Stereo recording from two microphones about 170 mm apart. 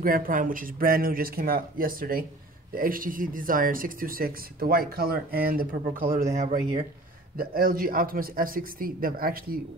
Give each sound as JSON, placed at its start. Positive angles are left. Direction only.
{"t": 0.0, "sound": "speech", "side_deg": -55}
{"t": 6.3, "sound": "speech", "side_deg": -45}
{"t": 7.3, "sound": "speech", "side_deg": -60}